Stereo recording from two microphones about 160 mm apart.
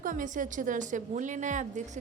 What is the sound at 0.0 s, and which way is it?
A woman's voice, 55° right (ahead or behind).